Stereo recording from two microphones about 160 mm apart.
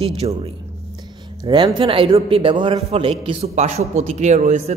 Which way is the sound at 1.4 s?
30° right (ahead or behind).